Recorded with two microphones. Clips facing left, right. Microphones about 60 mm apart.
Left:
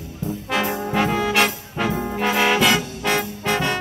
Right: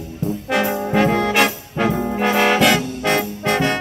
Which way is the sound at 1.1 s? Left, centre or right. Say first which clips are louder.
Right 2 dB; centre.